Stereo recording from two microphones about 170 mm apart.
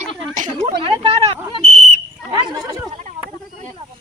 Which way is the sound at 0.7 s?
30° right (ahead or behind).